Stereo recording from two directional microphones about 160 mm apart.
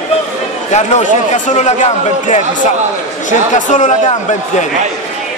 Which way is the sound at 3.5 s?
50° left (ahead or behind).